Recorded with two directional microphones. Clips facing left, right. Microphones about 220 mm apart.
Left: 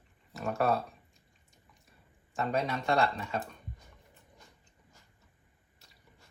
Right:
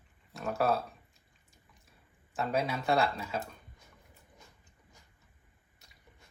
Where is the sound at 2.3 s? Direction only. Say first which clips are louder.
Even; 5° right (ahead or behind).